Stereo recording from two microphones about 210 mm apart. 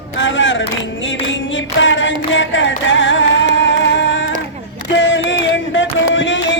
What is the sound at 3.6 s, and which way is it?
Music, 60° left (ahead or behind).